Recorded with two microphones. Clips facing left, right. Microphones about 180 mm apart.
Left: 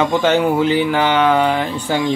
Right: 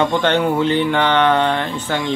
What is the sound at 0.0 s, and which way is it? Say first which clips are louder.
Speech: left 2 dB; 5° left (ahead or behind).